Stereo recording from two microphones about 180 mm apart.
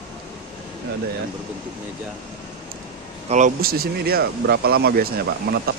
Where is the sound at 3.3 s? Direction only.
45° right (ahead or behind).